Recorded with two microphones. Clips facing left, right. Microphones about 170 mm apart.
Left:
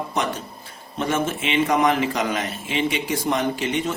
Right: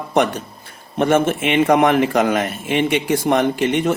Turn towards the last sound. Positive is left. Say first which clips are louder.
# right 6 dB
turn(degrees=-60)  # may be behind; listen again after turning